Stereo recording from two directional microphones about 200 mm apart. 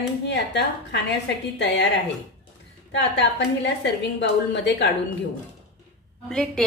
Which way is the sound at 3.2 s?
65° left (ahead or behind).